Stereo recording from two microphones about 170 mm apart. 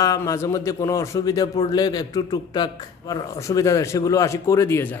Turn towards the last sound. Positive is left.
turn(degrees=15)  # may be behind; listen again after turning